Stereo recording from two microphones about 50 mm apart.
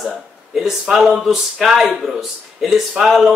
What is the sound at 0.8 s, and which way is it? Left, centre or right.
Speech, centre.